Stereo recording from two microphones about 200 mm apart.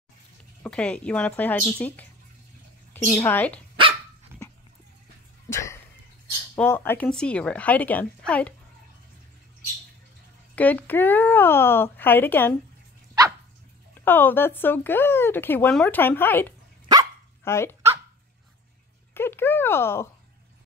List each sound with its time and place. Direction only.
0.7 s speech: 5° left (ahead or behind)
4.3 s a sound: 10° right (ahead or behind)
5.5 s a sound: 15° left (ahead or behind)
6.5 s speech: 10° left (ahead or behind)
10.5 s speech: 10° left (ahead or behind)
14.0 s speech: 10° left (ahead or behind)
16.8 s dog: 20° right (ahead or behind)
17.5 s speech: 15° left (ahead or behind)
19.1 s speech: 10° left (ahead or behind)